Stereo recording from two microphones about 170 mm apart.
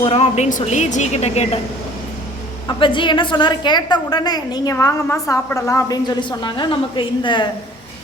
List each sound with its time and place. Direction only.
0.0 s a woman's voice: 35° left (ahead or behind)
2.6 s a woman's voice: 30° left (ahead or behind)